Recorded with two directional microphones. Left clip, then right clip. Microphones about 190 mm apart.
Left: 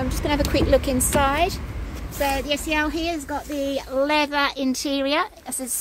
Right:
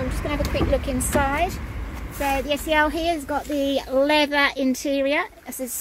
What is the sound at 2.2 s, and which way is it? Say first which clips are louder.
Speech: even; 5° right (ahead or behind).